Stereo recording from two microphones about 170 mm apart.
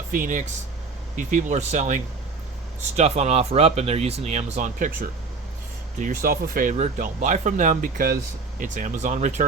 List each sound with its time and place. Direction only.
0.1 s speech: 50° right (ahead or behind)